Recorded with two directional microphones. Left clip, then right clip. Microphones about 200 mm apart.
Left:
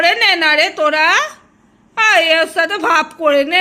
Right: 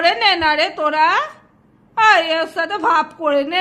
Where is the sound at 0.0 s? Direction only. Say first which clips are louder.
Left 3 dB; 10° left (ahead or behind).